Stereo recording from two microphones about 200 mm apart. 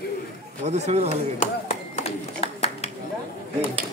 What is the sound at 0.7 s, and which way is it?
Speech, 35° right (ahead or behind).